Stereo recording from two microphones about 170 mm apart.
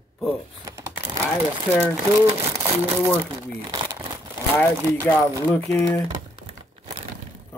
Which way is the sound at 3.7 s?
25° right (ahead or behind).